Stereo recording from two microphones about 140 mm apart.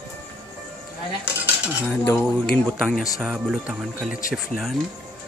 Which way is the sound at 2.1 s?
5° left (ahead or behind).